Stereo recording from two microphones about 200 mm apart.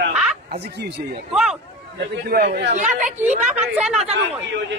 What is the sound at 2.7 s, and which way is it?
Speech, 35° right (ahead or behind).